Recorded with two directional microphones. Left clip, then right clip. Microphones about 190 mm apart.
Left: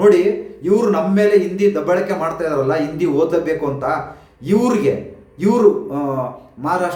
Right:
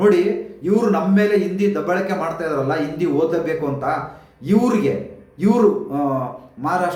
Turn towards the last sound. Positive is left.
turn(degrees=10)  # may be behind; listen again after turning